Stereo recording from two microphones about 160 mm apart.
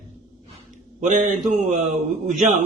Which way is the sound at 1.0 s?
50° right (ahead or behind).